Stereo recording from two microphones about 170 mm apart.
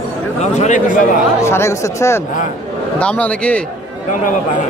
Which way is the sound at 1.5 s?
15° left (ahead or behind).